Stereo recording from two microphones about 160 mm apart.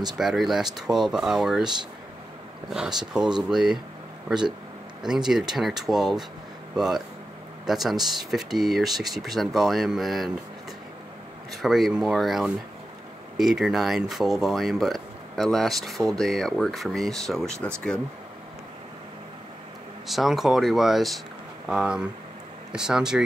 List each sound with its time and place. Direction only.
0.2 s speech: centre (ahead or behind)
2.7 s speech: 5° right (ahead or behind)
5.0 s speech: 5° right (ahead or behind)
11.5 s speech: centre (ahead or behind)
20.1 s speech: centre (ahead or behind)